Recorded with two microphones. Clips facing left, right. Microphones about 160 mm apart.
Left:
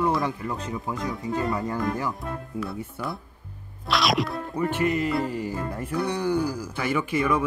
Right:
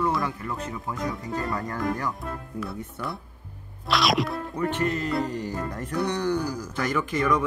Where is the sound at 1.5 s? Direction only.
10° left (ahead or behind).